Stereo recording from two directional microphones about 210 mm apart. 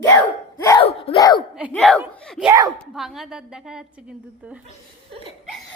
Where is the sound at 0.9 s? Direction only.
30° left (ahead or behind).